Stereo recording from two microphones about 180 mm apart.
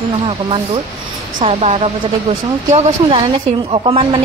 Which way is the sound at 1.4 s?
35° right (ahead or behind).